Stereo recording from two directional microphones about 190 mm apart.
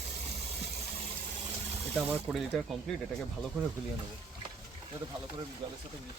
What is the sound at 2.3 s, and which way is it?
Speech, centre (ahead or behind).